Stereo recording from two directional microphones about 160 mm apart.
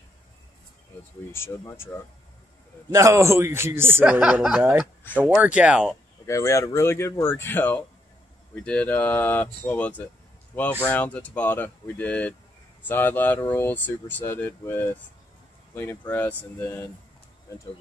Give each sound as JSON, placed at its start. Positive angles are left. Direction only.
{"t": 1.3, "sound": "speech", "side_deg": 15}
{"t": 2.9, "sound": "speech", "side_deg": -20}
{"t": 6.2, "sound": "speech", "side_deg": 20}